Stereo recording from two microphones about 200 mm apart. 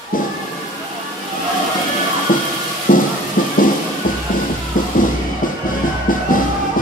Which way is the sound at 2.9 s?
40° left (ahead or behind).